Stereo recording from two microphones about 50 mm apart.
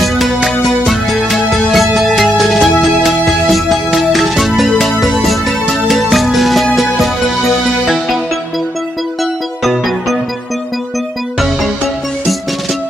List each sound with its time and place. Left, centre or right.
0.0 s music: centre
9.2 s music: centre
11.3 s music: centre